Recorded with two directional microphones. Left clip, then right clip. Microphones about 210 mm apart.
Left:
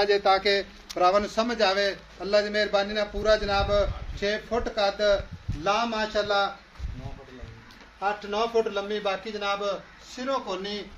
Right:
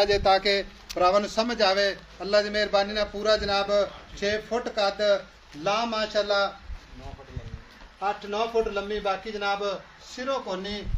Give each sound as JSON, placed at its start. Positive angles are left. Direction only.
{"t": 0.0, "sound": "speech", "side_deg": -35}
{"t": 0.8, "sound": "a man's voice", "side_deg": -20}
{"t": 8.0, "sound": "a man's voice", "side_deg": -10}